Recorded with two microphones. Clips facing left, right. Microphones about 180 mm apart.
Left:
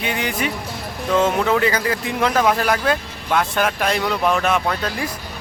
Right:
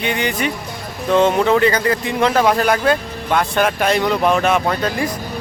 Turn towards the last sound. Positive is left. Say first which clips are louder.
# right 4 dB
turn(degrees=0)  # may be behind; listen again after turning